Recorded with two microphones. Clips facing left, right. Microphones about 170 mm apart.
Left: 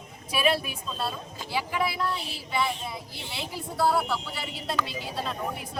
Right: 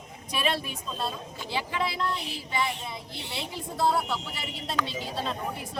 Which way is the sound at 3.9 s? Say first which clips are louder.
Left 2 dB; 20° right (ahead or behind).